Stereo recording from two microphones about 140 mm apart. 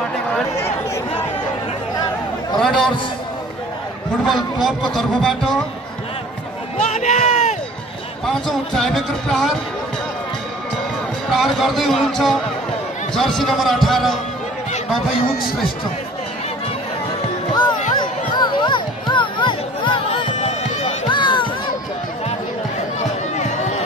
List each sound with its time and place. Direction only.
2.6 s speech: 5° left (ahead or behind)
4.3 s speech: centre (ahead or behind)
6.8 s a sound: 60° left (ahead or behind)
8.3 s speech: 5° left (ahead or behind)
11.3 s speech: centre (ahead or behind)
18.0 s music: 35° left (ahead or behind)
20.2 s music: 55° left (ahead or behind)
21.1 s music: 35° left (ahead or behind)
22.9 s run: 55° left (ahead or behind)